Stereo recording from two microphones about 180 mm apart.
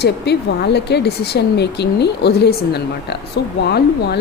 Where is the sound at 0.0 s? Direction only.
65° left (ahead or behind).